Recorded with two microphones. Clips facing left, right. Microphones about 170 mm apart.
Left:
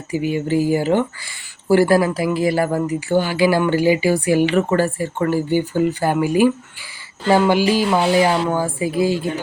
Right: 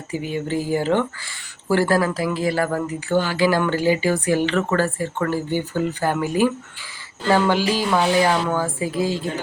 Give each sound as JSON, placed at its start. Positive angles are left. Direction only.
{"t": 0.1, "sound": "speech", "side_deg": 10}